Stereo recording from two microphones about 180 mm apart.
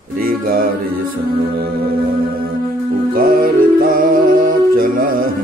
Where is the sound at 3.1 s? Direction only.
50° right (ahead or behind).